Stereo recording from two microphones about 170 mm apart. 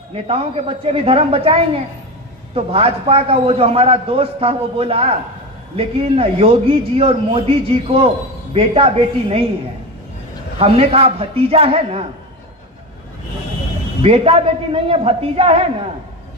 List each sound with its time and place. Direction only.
0.3 s a man's voice: 35° right (ahead or behind)
10.6 s a man's voice: 35° right (ahead or behind)
14.0 s a man's voice: 35° right (ahead or behind)